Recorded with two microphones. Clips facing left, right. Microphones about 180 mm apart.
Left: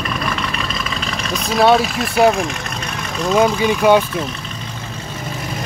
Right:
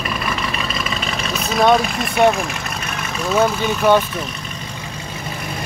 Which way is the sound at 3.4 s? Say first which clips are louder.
Left 2 dB; 10° left (ahead or behind).